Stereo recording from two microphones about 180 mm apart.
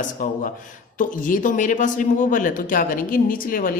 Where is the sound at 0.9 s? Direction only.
45° left (ahead or behind).